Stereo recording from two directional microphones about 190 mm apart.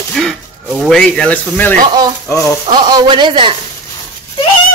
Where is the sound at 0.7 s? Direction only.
5° left (ahead or behind).